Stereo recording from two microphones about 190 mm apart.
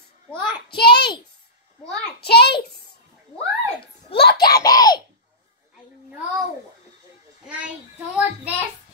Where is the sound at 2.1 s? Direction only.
60° left (ahead or behind).